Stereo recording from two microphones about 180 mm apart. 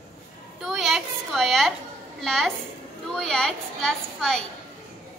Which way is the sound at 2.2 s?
Centre (ahead or behind).